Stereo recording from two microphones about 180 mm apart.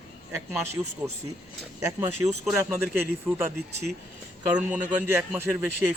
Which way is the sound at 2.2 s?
20° right (ahead or behind).